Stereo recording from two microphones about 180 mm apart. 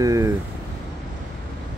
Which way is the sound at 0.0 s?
20° right (ahead or behind).